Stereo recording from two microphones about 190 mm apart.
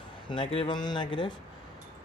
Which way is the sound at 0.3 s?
30° left (ahead or behind).